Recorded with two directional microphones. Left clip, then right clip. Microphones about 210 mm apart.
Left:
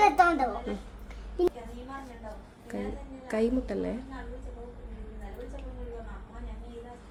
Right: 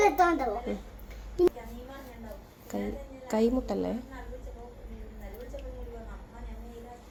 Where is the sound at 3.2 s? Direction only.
Centre (ahead or behind).